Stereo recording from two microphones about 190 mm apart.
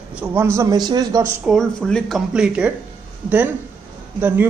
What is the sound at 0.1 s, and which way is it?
A man's voice, 10° right (ahead or behind).